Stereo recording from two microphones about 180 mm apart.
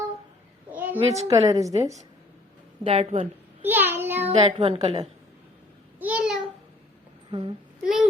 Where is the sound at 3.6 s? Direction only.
10° right (ahead or behind).